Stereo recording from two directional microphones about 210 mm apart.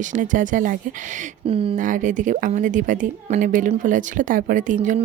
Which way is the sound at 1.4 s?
25° right (ahead or behind).